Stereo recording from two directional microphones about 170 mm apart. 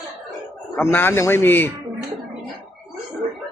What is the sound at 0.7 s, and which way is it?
Speech, 15° left (ahead or behind).